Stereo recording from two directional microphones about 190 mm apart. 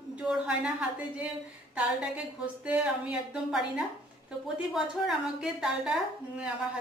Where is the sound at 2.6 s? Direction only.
5° right (ahead or behind).